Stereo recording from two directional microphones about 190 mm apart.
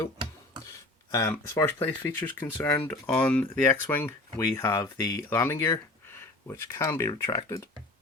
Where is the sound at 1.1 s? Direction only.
15° left (ahead or behind).